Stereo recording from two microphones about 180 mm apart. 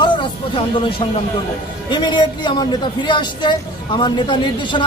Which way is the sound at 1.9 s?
25° left (ahead or behind).